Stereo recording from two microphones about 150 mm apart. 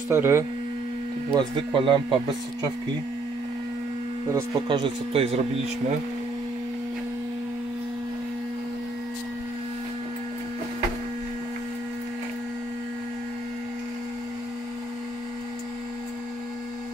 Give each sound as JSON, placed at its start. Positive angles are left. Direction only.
{"t": 0.1, "sound": "speech", "side_deg": -15}
{"t": 1.3, "sound": "speech", "side_deg": -35}
{"t": 4.3, "sound": "speech", "side_deg": -20}
{"t": 4.6, "sound": "speech", "side_deg": -30}